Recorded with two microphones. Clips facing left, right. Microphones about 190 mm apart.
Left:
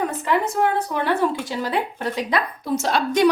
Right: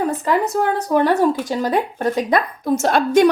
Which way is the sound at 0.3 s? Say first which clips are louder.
Right 1 dB; 40° right (ahead or behind).